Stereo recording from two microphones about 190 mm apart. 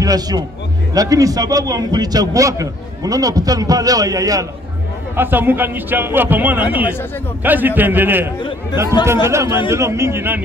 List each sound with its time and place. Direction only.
0.0 s a man's voice: 20° right (ahead or behind)